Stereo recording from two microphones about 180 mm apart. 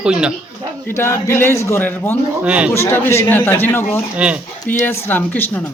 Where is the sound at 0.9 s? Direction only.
15° left (ahead or behind).